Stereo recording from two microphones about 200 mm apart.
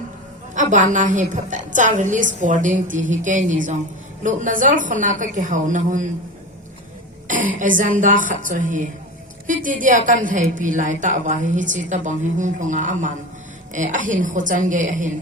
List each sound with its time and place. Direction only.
0.5 s a woman's voice: 40° right (ahead or behind)
7.3 s a sound: 40° right (ahead or behind)
7.8 s a woman's voice: 40° right (ahead or behind)
9.8 s a woman's voice: 40° right (ahead or behind)